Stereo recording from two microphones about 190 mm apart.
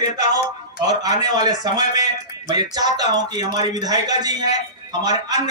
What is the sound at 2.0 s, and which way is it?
Speech, 40° left (ahead or behind).